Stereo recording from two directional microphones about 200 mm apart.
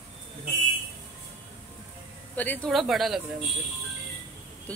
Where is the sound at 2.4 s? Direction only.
5° left (ahead or behind).